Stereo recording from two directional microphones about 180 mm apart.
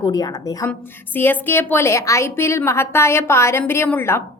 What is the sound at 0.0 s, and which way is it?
A woman's voice, 20° left (ahead or behind).